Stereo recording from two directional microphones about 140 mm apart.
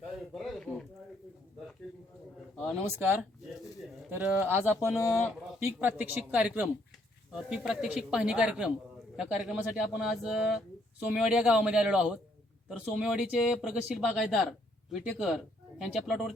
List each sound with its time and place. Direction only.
0.3 s a sound: centre (ahead or behind)
4.1 s speech: 15° right (ahead or behind)
4.9 s a man's voice: 20° left (ahead or behind)
5.5 s speech: 15° right (ahead or behind)